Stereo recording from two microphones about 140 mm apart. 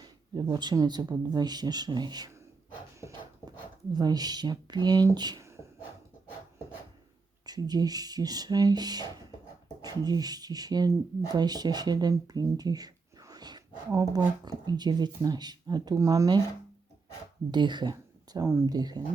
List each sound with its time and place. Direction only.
0.0 s speech: 30° right (ahead or behind)
3.9 s speech: 30° right (ahead or behind)
7.4 s speech: 30° right (ahead or behind)
17.5 s speech: 35° right (ahead or behind)
18.3 s speech: 20° right (ahead or behind)